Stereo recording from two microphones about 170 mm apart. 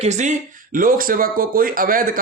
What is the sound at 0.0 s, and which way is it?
A man's voice, 45° right (ahead or behind).